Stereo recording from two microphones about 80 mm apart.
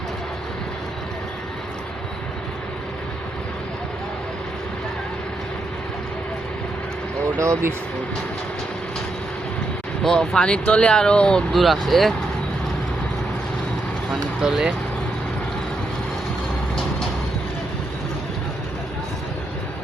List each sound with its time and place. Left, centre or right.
7.3 s speech: right
10.0 s speech: centre
14.1 s speech: centre